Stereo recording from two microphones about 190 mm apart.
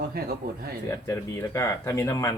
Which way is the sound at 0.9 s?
15° left (ahead or behind).